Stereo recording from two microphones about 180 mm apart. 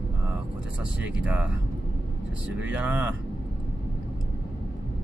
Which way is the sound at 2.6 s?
10° right (ahead or behind).